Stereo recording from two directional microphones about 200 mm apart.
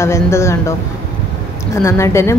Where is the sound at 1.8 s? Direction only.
15° left (ahead or behind).